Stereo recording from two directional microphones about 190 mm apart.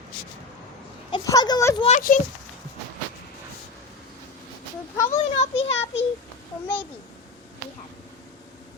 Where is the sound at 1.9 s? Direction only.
45° left (ahead or behind).